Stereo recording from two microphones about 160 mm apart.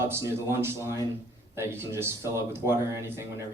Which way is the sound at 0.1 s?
15° right (ahead or behind).